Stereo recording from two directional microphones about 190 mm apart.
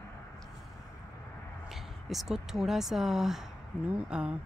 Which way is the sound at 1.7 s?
Centre (ahead or behind).